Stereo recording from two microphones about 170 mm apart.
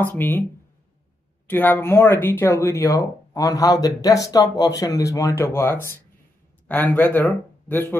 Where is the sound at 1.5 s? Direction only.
10° left (ahead or behind).